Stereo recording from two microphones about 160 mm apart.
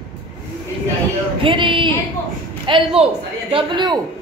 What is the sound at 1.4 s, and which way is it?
A woman's voice, 30° right (ahead or behind).